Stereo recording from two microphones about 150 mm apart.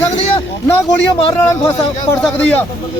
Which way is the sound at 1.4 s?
15° left (ahead or behind).